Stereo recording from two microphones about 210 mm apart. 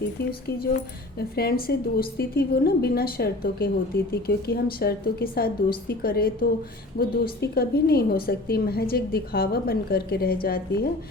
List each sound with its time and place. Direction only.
0.3 s a woman's voice: 50° left (ahead or behind)